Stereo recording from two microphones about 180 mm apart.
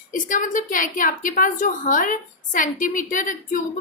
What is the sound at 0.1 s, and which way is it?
A woman's voice, 45° left (ahead or behind).